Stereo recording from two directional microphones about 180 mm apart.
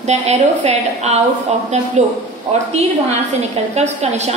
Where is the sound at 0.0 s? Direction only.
40° right (ahead or behind).